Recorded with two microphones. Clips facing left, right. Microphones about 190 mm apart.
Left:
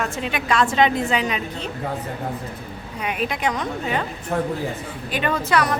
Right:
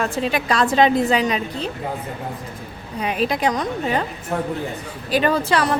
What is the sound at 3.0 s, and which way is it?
Speech, 35° right (ahead or behind).